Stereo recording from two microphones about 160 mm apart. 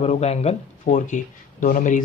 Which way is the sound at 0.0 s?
40° left (ahead or behind).